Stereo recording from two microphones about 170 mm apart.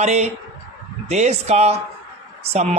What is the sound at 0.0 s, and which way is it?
Speech, 40° right (ahead or behind).